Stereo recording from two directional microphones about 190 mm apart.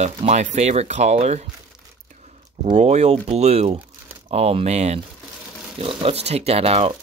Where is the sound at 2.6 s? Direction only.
35° right (ahead or behind).